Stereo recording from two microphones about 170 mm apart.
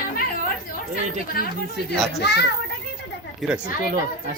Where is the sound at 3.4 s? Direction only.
5° right (ahead or behind).